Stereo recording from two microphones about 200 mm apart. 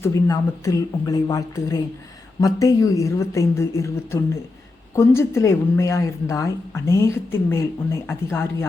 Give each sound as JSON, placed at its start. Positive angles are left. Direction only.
{"t": 0.0, "sound": "speech", "side_deg": 15}